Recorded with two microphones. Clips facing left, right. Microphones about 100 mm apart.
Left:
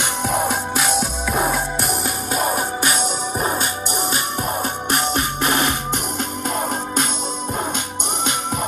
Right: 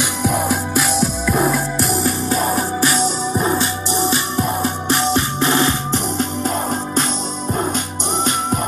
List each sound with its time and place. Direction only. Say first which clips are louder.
0.5 s music: right 2 dB; 55° left (ahead or behind)
3.3 s music: right 4 dB; 40° left (ahead or behind)
4.8 s music: right 3 dB; 50° left (ahead or behind)